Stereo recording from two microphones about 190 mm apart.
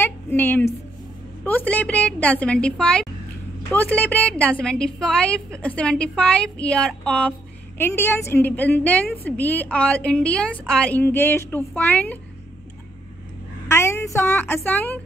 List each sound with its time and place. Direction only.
0.0 s a woman's voice: 10° left (ahead or behind)
13.7 s a woman's voice: 15° left (ahead or behind)